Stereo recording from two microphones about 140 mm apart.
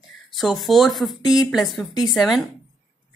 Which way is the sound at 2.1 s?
Centre (ahead or behind).